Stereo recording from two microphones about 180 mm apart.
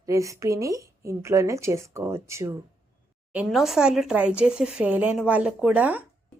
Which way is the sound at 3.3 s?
5° right (ahead or behind).